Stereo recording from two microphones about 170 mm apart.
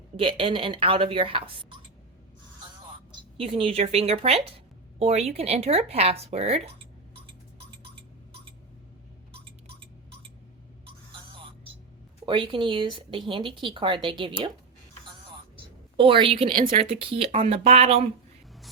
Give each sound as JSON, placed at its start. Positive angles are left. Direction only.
{"t": 0.2, "sound": "a woman's voice", "side_deg": -30}
{"t": 3.3, "sound": "a woman's voice", "side_deg": -30}
{"t": 12.2, "sound": "speech", "side_deg": -30}
{"t": 16.0, "sound": "a woman's voice", "side_deg": -30}